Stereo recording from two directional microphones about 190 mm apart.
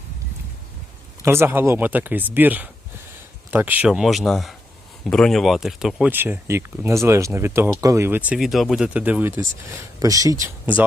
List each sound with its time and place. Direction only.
1.2 s speech: 10° right (ahead or behind)